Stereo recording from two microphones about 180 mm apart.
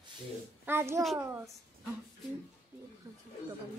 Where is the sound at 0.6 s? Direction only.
10° right (ahead or behind).